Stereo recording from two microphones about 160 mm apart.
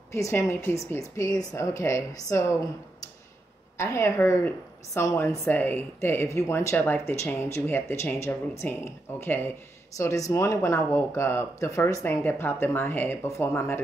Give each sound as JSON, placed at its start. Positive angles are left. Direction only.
{"t": 0.1, "sound": "a woman's voice", "side_deg": 20}
{"t": 3.7, "sound": "a woman's voice", "side_deg": 15}